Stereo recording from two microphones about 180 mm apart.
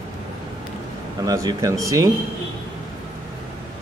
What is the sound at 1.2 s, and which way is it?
Speech, 20° right (ahead or behind).